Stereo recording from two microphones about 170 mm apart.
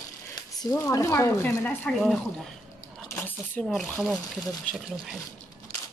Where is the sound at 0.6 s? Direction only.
15° left (ahead or behind).